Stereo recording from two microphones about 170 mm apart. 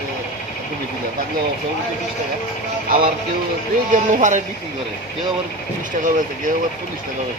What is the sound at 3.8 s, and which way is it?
Speech, 50° right (ahead or behind).